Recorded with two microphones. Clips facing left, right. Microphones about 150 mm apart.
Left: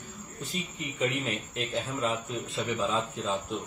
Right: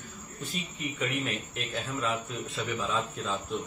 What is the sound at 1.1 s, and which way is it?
A man's voice, 25° left (ahead or behind).